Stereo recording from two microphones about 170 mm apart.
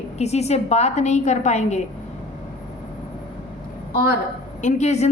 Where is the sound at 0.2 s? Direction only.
40° left (ahead or behind).